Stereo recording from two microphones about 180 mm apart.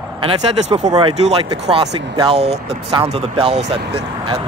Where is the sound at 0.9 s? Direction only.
25° right (ahead or behind).